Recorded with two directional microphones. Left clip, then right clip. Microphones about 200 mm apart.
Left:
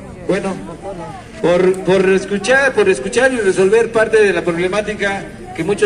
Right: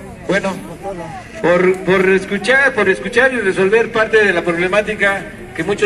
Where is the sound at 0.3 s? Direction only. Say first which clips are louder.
Right 1 dB; 20° left (ahead or behind).